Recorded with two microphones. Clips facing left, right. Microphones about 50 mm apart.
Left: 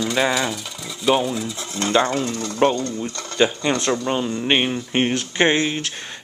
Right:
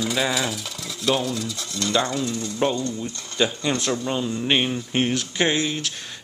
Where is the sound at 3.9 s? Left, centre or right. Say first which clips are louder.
Left 3 dB; left.